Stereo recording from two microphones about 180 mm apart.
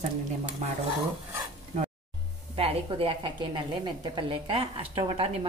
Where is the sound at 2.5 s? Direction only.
30° right (ahead or behind).